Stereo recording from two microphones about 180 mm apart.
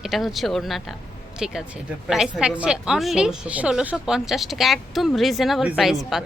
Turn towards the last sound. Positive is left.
turn(degrees=0)  # may be behind; listen again after turning